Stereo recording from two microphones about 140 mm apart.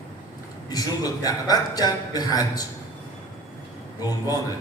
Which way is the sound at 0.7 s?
25° left (ahead or behind).